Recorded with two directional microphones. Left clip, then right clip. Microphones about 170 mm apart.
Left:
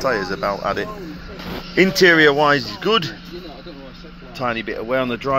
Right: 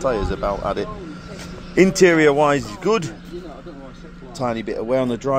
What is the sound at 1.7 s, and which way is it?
Speech, 15° right (ahead or behind).